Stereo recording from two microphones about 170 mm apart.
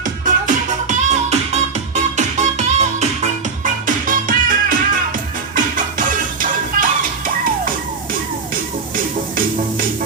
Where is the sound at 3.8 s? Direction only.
50° right (ahead or behind).